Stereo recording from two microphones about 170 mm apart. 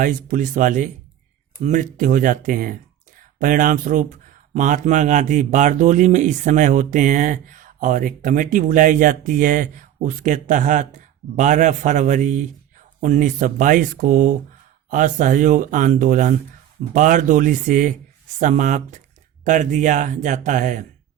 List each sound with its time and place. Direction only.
0.0 s speech: 50° right (ahead or behind)